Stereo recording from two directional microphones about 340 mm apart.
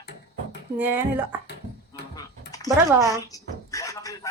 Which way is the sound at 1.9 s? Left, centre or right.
Centre.